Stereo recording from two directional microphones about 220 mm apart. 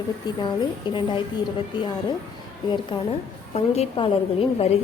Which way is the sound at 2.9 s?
20° left (ahead or behind).